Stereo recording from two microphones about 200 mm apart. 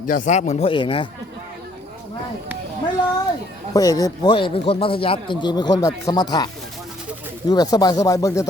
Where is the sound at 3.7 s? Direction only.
20° left (ahead or behind).